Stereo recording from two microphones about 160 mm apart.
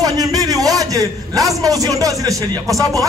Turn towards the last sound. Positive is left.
turn(degrees=-20)  # may be behind; listen again after turning